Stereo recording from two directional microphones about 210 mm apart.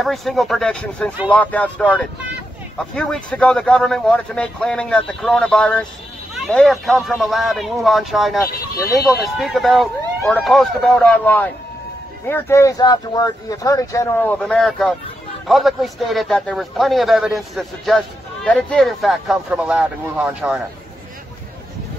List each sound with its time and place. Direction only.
0.0 s a man's voice: centre (ahead or behind)
14.4 s a man's voice: centre (ahead or behind)